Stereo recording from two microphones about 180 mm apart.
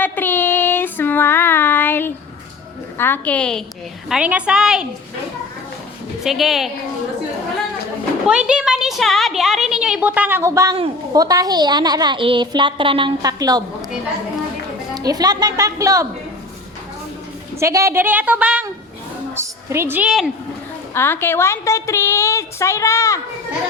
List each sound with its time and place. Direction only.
0.0 s child singing: 10° left (ahead or behind)
3.0 s a woman's voice: 10° left (ahead or behind)
4.1 s a woman's voice: 5° right (ahead or behind)
6.2 s a woman's voice: centre (ahead or behind)
8.3 s a sound: 5° right (ahead or behind)
11.1 s a woman's voice: 20° right (ahead or behind)
14.9 s a woman's voice: 20° right (ahead or behind)
17.6 s a woman's voice: 15° right (ahead or behind)
20.9 s a woman's voice: 10° left (ahead or behind)